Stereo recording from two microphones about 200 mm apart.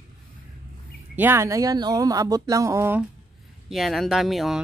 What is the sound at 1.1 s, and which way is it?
Speech, 10° right (ahead or behind).